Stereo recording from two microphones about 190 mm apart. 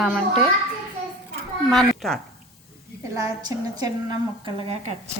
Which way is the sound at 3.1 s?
20° right (ahead or behind).